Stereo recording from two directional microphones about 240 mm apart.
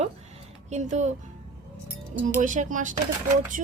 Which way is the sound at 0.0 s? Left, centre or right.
Right.